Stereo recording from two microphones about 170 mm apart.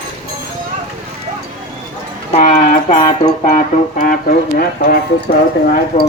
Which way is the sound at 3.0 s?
30° left (ahead or behind).